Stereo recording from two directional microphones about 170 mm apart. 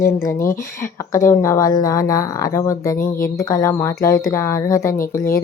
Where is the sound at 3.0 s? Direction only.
55° left (ahead or behind).